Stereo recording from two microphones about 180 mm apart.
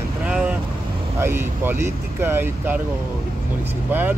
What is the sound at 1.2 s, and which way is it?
Speech, 10° right (ahead or behind).